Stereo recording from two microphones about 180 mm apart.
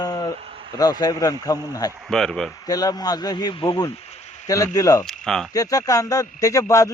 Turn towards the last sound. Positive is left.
turn(degrees=15)  # may be behind; listen again after turning